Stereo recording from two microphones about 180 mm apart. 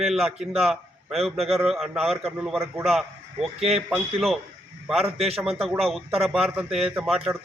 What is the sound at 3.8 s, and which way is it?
Speech, 5° right (ahead or behind).